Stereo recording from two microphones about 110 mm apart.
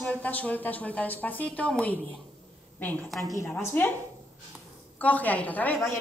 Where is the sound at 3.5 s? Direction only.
15° left (ahead or behind).